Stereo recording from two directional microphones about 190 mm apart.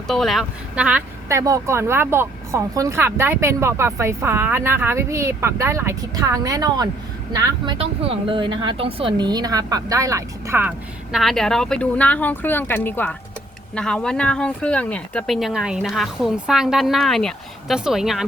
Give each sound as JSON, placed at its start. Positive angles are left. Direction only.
{"t": 0.1, "sound": "speech", "side_deg": 0}